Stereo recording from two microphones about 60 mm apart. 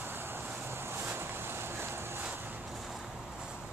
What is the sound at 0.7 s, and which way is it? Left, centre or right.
Vehicle, right.